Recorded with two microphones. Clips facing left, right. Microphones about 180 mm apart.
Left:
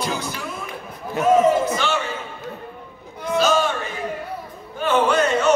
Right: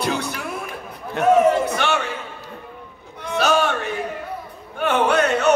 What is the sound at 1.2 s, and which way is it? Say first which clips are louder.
Speech: right 1 dB; 65° right (ahead or behind).